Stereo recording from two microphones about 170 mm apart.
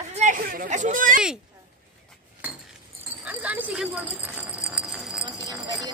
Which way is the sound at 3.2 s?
10° right (ahead or behind).